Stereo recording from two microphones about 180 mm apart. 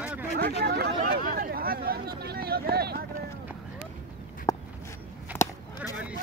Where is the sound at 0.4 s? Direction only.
60° right (ahead or behind).